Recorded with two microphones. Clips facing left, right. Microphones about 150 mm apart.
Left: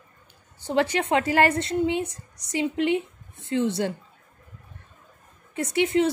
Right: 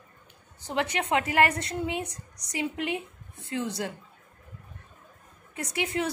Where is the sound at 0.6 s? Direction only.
30° left (ahead or behind).